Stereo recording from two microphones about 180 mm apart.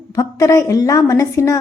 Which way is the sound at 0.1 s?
20° left (ahead or behind).